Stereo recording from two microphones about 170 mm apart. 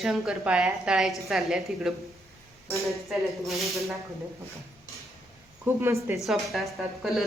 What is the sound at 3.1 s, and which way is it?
Speech, centre (ahead or behind).